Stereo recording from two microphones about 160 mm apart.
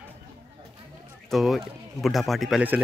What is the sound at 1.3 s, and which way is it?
Speech, centre (ahead or behind).